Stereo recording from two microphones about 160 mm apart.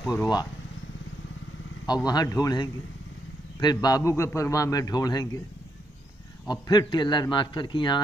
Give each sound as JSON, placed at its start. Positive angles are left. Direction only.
{"t": 0.1, "sound": "a man's voice", "side_deg": 25}
{"t": 2.0, "sound": "a man's voice", "side_deg": 25}
{"t": 6.4, "sound": "a man's voice", "side_deg": 25}